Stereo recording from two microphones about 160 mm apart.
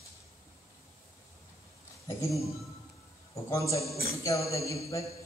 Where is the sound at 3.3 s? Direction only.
20° left (ahead or behind).